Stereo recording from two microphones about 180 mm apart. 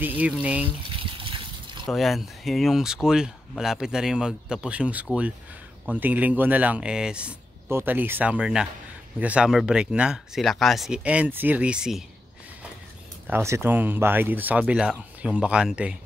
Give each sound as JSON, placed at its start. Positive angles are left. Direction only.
{"t": 0.0, "sound": "speech", "side_deg": -10}
{"t": 0.7, "sound": "liquid", "side_deg": -30}
{"t": 1.9, "sound": "speech", "side_deg": 0}
{"t": 13.3, "sound": "speech", "side_deg": -15}